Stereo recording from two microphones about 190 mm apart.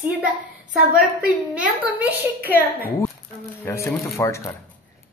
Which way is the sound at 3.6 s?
15° left (ahead or behind).